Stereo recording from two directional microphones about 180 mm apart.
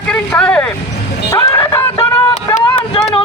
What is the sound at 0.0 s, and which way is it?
Vehicle, 5° left (ahead or behind).